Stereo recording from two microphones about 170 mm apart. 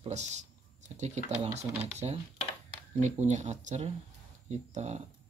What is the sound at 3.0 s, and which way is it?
Speech, 45° right (ahead or behind).